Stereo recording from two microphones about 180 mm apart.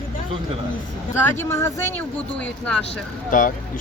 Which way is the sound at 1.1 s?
15° left (ahead or behind).